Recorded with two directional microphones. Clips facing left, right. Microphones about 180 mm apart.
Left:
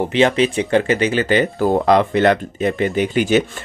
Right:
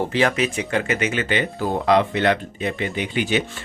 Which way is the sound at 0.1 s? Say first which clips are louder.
Left 5 dB; 25° left (ahead or behind).